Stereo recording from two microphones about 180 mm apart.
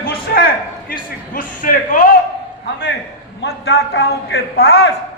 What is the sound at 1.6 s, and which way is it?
Speech, 50° left (ahead or behind).